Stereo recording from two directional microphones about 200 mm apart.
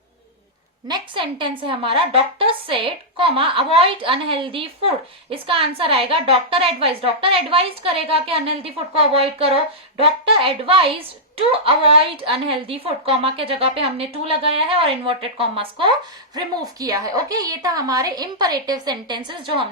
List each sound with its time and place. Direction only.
0.9 s a woman's voice: 25° right (ahead or behind)